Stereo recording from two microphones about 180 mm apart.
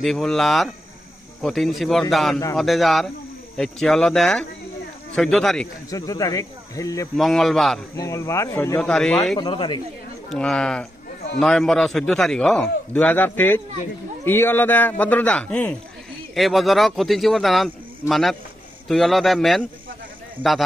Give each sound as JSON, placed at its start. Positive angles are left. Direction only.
{"t": 0.0, "sound": "a man's voice", "side_deg": 0}
{"t": 5.9, "sound": "speech", "side_deg": 20}
{"t": 7.2, "sound": "a man's voice", "side_deg": 0}
{"t": 7.9, "sound": "speech", "side_deg": 15}
{"t": 9.4, "sound": "speech", "side_deg": 25}
{"t": 10.3, "sound": "a man's voice", "side_deg": 5}